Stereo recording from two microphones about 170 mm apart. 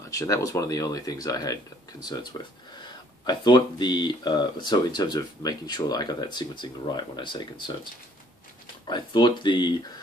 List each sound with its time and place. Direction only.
0.1 s speech: 20° left (ahead or behind)
8.8 s speech: 25° left (ahead or behind)